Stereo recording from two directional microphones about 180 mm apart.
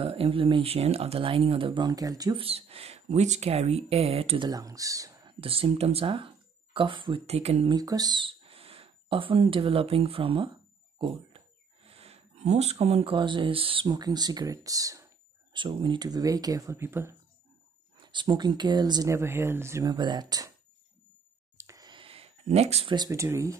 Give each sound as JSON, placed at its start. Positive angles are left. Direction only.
{"t": 0.0, "sound": "speech", "side_deg": -30}
{"t": 2.4, "sound": "speech", "side_deg": -35}
{"t": 4.5, "sound": "speech", "side_deg": -20}
{"t": 5.4, "sound": "speech", "side_deg": -30}
{"t": 7.7, "sound": "speech", "side_deg": -20}
{"t": 17.9, "sound": "speech", "side_deg": -25}
{"t": 21.5, "sound": "a sound", "side_deg": -20}
{"t": 22.9, "sound": "speech", "side_deg": -15}